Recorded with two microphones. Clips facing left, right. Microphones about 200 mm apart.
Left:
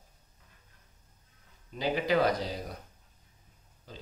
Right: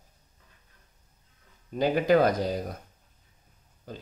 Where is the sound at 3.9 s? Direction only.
50° right (ahead or behind).